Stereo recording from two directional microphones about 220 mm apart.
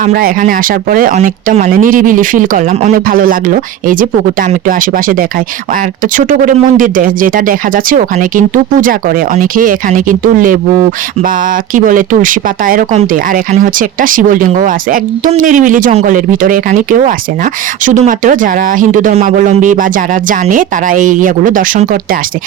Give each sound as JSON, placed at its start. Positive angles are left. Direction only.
{"t": 0.0, "sound": "speech", "side_deg": -40}
{"t": 6.1, "sound": "speech", "side_deg": -35}
{"t": 11.7, "sound": "speech", "side_deg": -35}